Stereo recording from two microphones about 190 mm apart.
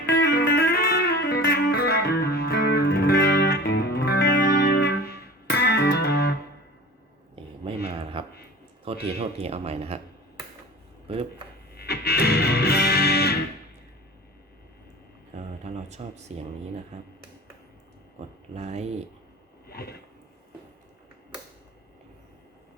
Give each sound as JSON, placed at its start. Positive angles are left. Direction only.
{"t": 0.0, "sound": "music", "side_deg": 55}
{"t": 7.4, "sound": "a sound", "side_deg": -25}
{"t": 8.8, "sound": "speech", "side_deg": -30}
{"t": 11.1, "sound": "speech", "side_deg": -30}
{"t": 11.7, "sound": "music", "side_deg": 55}
{"t": 15.6, "sound": "speech", "side_deg": -35}
{"t": 18.5, "sound": "speech", "side_deg": -35}
{"t": 19.6, "sound": "a sound", "side_deg": 55}